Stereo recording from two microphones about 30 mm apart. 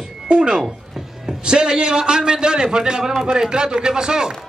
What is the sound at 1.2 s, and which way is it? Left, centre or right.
A man's voice, right.